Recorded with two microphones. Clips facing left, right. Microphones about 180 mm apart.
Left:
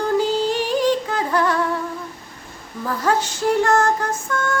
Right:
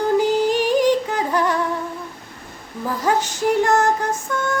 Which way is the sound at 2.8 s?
15° right (ahead or behind).